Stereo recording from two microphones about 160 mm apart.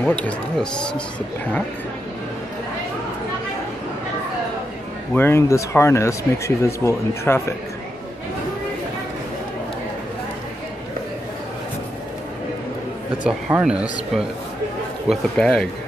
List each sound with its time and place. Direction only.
0.0 s speech: 5° left (ahead or behind)
5.1 s speech: 15° left (ahead or behind)
13.2 s speech: 5° right (ahead or behind)
15.0 s a man's voice: 5° left (ahead or behind)